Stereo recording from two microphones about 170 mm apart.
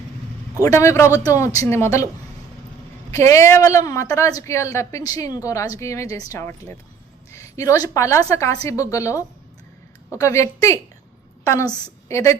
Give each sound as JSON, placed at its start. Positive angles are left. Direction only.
{"t": 0.6, "sound": "a woman's voice", "side_deg": 15}
{"t": 3.2, "sound": "a woman's voice", "side_deg": 15}